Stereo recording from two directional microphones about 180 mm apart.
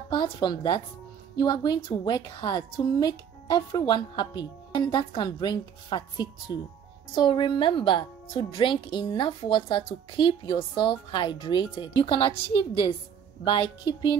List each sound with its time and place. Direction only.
0.1 s a woman's voice: 25° left (ahead or behind)